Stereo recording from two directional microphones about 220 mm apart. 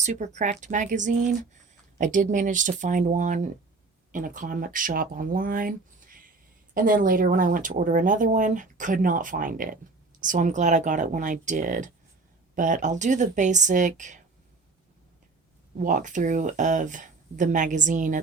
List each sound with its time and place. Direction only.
0.0 s speech: 30° right (ahead or behind)
15.8 s speech: 35° right (ahead or behind)